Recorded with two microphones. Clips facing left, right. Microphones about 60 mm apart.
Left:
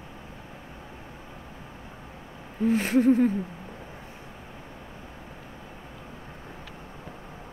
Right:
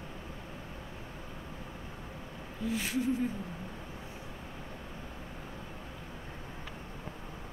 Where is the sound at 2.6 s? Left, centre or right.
Left.